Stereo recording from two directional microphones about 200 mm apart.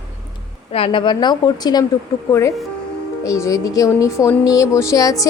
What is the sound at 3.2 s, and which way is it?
Speech, 15° left (ahead or behind).